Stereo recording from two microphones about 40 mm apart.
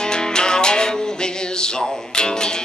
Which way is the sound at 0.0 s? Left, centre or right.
Centre.